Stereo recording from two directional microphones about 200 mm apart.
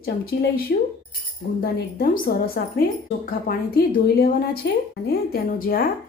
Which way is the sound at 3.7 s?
50° left (ahead or behind).